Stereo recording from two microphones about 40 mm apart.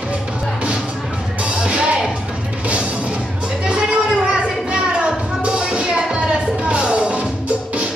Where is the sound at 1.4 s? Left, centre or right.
Right.